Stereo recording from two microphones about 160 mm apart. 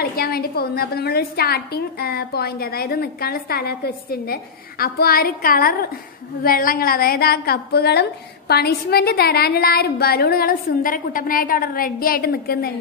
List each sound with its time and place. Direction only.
0.0 s a woman's voice: 70° left (ahead or behind)